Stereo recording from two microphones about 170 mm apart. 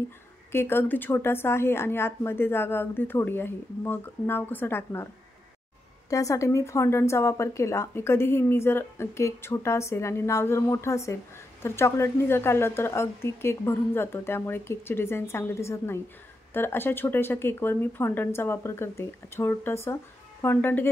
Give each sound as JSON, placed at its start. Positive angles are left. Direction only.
{"t": 0.5, "sound": "a woman's voice", "side_deg": 15}
{"t": 6.0, "sound": "a woman's voice", "side_deg": 20}